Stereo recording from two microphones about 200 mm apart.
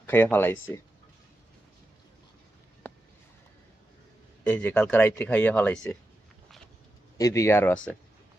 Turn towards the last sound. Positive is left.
turn(degrees=5)  # may be behind; listen again after turning